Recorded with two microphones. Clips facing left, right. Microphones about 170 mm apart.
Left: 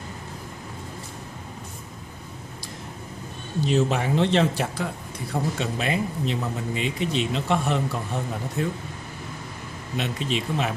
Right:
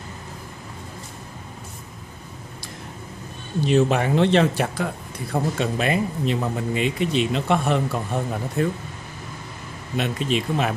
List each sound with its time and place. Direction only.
3.6 s speech: 60° right (ahead or behind)
9.9 s speech: 55° right (ahead or behind)